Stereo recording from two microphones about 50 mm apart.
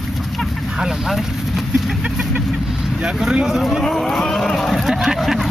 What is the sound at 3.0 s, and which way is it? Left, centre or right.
Speech, centre.